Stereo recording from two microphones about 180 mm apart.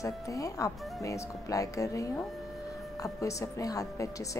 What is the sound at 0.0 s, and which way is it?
Speech, 20° left (ahead or behind).